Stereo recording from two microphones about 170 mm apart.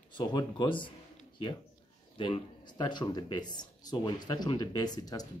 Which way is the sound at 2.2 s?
25° left (ahead or behind).